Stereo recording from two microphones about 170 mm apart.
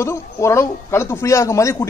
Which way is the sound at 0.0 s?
15° left (ahead or behind).